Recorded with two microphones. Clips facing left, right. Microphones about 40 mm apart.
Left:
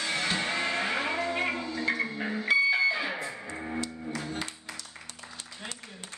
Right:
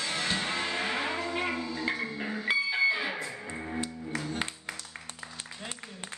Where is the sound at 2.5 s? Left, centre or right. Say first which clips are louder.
Left 4 dB; centre.